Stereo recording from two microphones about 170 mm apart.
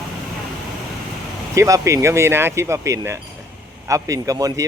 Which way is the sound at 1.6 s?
20° right (ahead or behind).